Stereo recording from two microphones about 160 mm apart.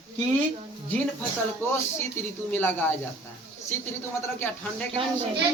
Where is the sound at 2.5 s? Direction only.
10° left (ahead or behind).